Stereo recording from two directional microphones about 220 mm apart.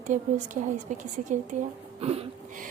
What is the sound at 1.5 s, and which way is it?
Speech, 35° right (ahead or behind).